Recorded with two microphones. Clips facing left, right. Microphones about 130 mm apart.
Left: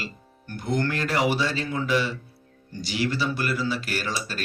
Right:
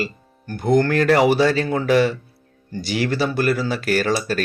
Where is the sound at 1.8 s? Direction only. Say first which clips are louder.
Right 6 dB; 50° right (ahead or behind).